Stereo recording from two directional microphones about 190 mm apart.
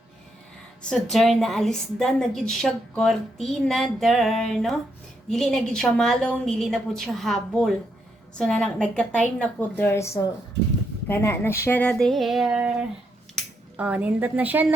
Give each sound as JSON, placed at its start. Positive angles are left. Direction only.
{"t": 0.9, "sound": "a woman's voice", "side_deg": 0}